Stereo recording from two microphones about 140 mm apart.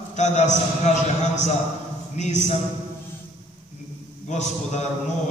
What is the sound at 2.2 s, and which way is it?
Speech, 55° left (ahead or behind).